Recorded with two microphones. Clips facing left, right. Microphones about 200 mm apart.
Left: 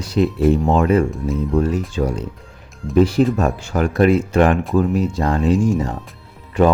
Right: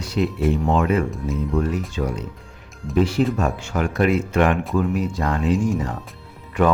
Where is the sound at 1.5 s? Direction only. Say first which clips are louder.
Left 4 dB; 30° left (ahead or behind).